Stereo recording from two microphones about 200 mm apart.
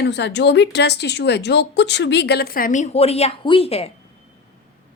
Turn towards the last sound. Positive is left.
turn(degrees=30)  # may be behind; listen again after turning